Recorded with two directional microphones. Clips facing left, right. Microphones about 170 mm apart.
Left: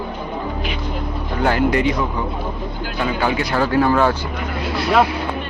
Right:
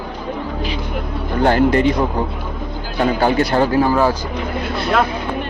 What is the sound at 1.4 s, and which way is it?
Speech, 40° right (ahead or behind).